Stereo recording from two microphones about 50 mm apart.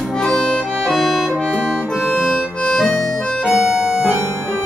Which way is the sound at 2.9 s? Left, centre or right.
Centre.